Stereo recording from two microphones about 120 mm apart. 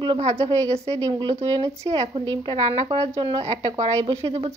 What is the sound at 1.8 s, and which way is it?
Speech, 55° right (ahead or behind).